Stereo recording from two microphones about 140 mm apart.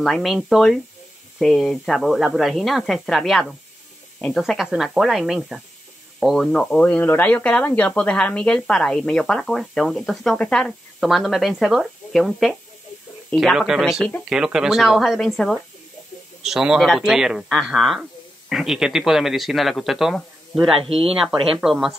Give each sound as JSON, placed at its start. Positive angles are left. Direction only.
{"t": 0.0, "sound": "speech", "side_deg": 0}
{"t": 20.7, "sound": "speech", "side_deg": -40}
{"t": 21.0, "sound": "speech", "side_deg": 0}